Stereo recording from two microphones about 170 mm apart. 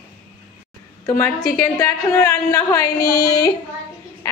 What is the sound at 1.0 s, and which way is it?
A woman's voice, 15° left (ahead or behind).